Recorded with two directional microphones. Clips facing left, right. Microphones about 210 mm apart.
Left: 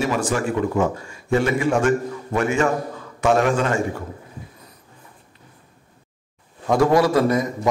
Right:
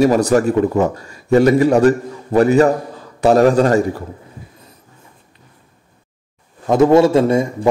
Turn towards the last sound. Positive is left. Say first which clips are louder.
# right 5 dB
turn(degrees=-25)  # may be behind; listen again after turning